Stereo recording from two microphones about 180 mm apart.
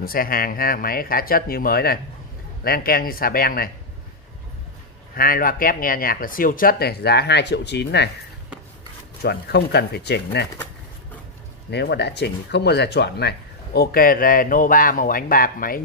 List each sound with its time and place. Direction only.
0.0 s speech: 55° left (ahead or behind)
5.1 s speech: 55° left (ahead or behind); by 8.1 s 70° left (ahead or behind)
9.2 s speech: 65° left (ahead or behind)
11.7 s speech: 70° left (ahead or behind)
13.7 s speech: 55° left (ahead or behind)